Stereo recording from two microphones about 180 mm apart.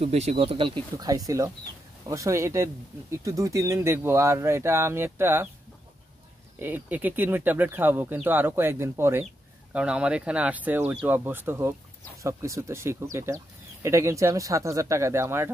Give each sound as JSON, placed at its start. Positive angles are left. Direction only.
{"t": 0.0, "sound": "speech", "side_deg": -35}
{"t": 0.9, "sound": "speech", "side_deg": -20}
{"t": 6.6, "sound": "speech", "side_deg": -10}